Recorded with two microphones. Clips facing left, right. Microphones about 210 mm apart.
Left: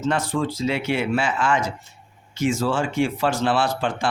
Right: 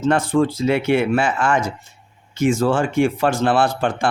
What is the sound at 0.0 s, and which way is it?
Speech, 55° right (ahead or behind).